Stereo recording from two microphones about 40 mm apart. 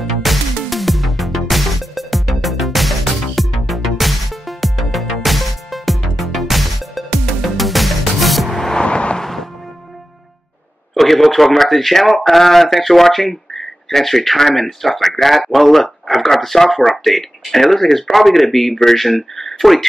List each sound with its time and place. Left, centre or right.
0.0 s music: centre
8.8 s vehicle: left
9.2 s music: centre
11.0 s speech: centre